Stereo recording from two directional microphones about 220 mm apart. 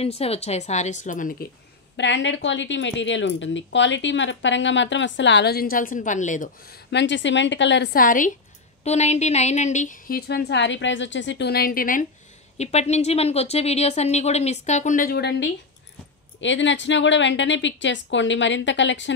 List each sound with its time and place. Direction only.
0.0 s a woman's voice: 25° left (ahead or behind)
2.0 s a woman's voice: 55° left (ahead or behind)